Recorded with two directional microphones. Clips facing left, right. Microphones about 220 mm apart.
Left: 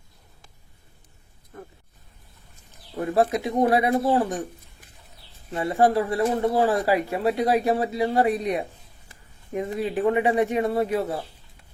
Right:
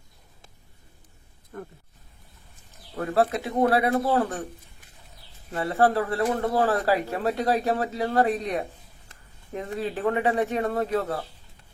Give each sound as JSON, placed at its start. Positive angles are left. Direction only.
{"t": 1.5, "sound": "speech", "side_deg": -50}
{"t": 3.0, "sound": "a man's voice", "side_deg": 15}
{"t": 5.5, "sound": "a man's voice", "side_deg": 15}